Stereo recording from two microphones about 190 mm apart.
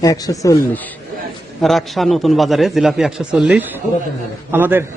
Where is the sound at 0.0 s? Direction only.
20° left (ahead or behind).